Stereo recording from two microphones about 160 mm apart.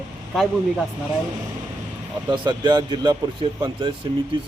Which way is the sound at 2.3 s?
30° right (ahead or behind).